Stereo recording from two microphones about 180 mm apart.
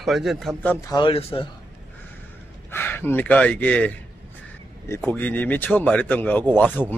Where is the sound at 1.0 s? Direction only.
30° left (ahead or behind).